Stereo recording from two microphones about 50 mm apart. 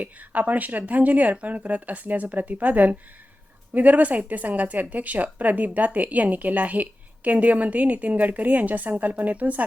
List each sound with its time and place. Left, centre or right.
0.0 s speech: right